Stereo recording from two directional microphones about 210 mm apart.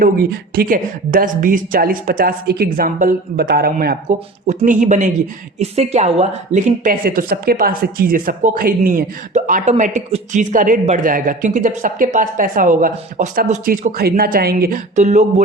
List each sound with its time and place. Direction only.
0.0 s a woman's voice: 45° right (ahead or behind)